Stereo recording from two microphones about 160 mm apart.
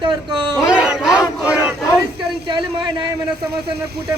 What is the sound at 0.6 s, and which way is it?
Battle cry, 5° right (ahead or behind).